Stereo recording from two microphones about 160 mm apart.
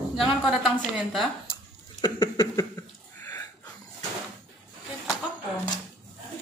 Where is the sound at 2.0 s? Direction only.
25° left (ahead or behind).